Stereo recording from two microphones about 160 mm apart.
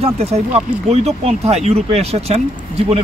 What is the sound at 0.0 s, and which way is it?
Speech, 40° right (ahead or behind).